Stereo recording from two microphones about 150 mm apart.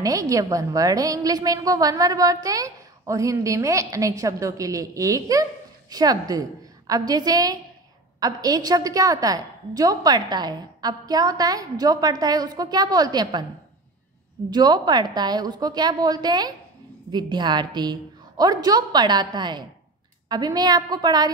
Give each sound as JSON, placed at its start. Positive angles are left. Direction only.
{"t": 0.0, "sound": "a woman's voice", "side_deg": -20}
{"t": 14.5, "sound": "a woman's voice", "side_deg": -30}